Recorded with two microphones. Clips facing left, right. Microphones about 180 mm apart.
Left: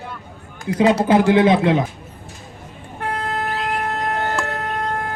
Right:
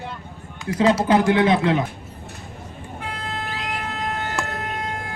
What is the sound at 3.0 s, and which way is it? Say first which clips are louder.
Vehicle: left 7 dB; 60° left (ahead or behind).